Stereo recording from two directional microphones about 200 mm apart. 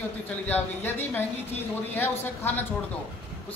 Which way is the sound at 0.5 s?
10° left (ahead or behind).